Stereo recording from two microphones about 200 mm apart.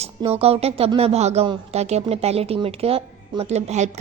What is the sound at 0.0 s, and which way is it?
A woman's voice, 30° right (ahead or behind).